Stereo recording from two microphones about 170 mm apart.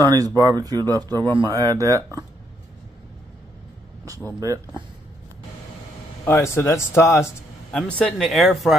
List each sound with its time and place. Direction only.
0.0 s speech: 20° right (ahead or behind)
6.2 s speech: 15° left (ahead or behind)
8.0 s speech: centre (ahead or behind)